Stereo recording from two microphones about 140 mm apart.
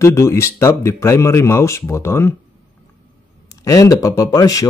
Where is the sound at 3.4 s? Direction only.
25° left (ahead or behind).